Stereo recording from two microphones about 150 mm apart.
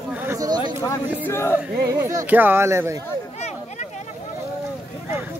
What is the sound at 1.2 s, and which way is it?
Speech, 15° left (ahead or behind).